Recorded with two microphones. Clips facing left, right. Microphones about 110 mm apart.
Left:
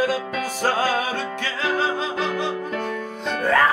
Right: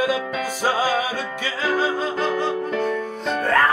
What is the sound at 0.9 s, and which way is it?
Music, 55° left (ahead or behind).